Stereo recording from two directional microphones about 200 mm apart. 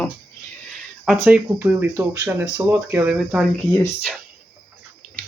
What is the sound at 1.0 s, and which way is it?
Speech, 5° right (ahead or behind).